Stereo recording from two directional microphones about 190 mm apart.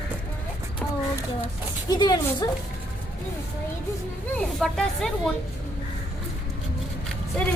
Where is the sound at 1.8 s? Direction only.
20° left (ahead or behind).